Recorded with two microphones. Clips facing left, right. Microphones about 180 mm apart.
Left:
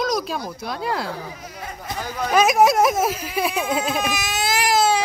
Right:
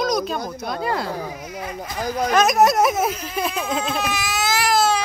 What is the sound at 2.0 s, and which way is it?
Speech, 40° right (ahead or behind).